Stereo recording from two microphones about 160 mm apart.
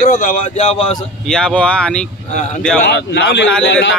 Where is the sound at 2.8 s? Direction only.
90° left.